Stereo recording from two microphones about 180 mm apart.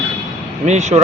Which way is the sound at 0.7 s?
40° right (ahead or behind).